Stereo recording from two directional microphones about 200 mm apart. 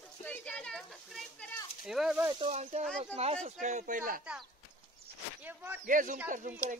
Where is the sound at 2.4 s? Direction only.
30° right (ahead or behind).